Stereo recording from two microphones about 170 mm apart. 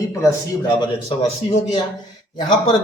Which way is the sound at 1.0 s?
40° left (ahead or behind).